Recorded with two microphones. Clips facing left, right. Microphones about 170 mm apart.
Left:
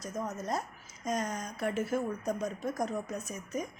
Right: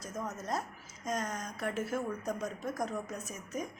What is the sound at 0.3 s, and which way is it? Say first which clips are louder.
A woman's voice: left 2 dB; centre (ahead or behind).